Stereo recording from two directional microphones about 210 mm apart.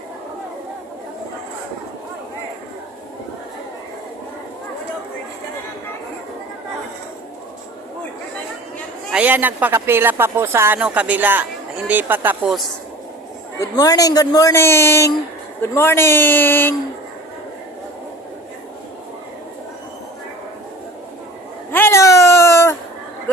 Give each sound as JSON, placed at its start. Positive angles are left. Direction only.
{"t": 9.0, "sound": "speech", "side_deg": -5}
{"t": 13.6, "sound": "a man's voice", "side_deg": 15}
{"t": 21.7, "sound": "a sound", "side_deg": 10}